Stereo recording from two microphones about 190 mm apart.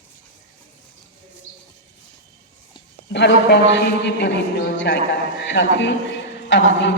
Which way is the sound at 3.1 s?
60° left (ahead or behind).